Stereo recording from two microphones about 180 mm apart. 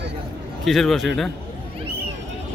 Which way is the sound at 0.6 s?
Centre (ahead or behind).